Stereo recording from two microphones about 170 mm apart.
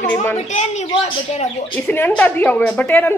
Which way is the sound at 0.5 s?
40° left (ahead or behind).